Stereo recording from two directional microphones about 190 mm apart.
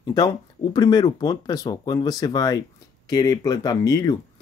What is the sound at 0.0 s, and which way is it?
Speech, 20° left (ahead or behind).